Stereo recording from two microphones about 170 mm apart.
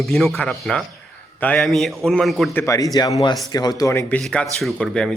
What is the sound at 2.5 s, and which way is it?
Speech, 20° left (ahead or behind).